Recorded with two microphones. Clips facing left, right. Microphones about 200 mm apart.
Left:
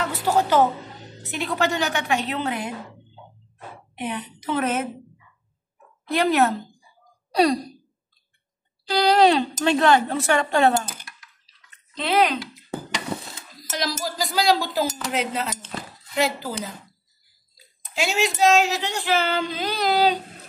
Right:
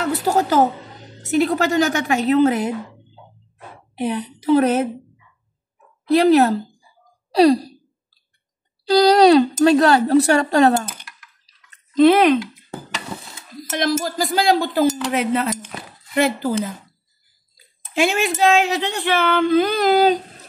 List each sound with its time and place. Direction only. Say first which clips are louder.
0.0 s a woman's voice: right 3 dB; 45° right (ahead or behind)
3.9 s a woman's voice: right 7 dB; 35° right (ahead or behind)
6.0 s a woman's voice: right 7 dB; 35° right (ahead or behind)
8.8 s a woman's voice: right 6 dB; 35° right (ahead or behind)
11.9 s speech: right 9 dB; 50° right (ahead or behind)
13.6 s speech: right 7 dB; 55° right (ahead or behind)
17.6 s speech: right 8 dB; 55° right (ahead or behind)